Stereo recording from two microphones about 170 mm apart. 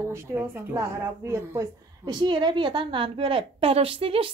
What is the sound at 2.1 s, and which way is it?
A woman's voice, 25° right (ahead or behind).